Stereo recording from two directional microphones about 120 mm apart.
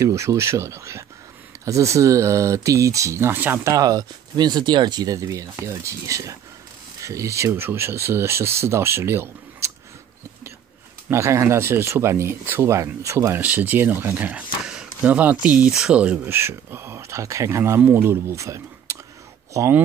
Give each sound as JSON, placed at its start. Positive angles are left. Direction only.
{"t": 0.0, "sound": "speech", "side_deg": -25}
{"t": 3.7, "sound": "speech", "side_deg": -30}
{"t": 11.1, "sound": "speech", "side_deg": -25}